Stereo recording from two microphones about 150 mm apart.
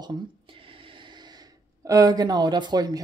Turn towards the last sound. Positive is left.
turn(degrees=-25)  # may be behind; listen again after turning